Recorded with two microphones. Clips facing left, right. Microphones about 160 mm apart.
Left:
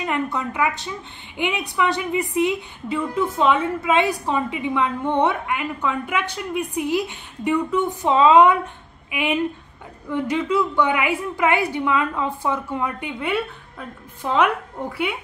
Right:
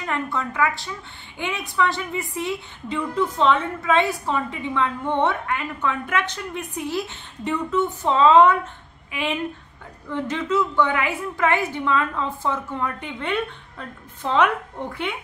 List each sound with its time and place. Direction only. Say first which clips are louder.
0.0 s a woman's voice: left 2 dB; 15° left (ahead or behind)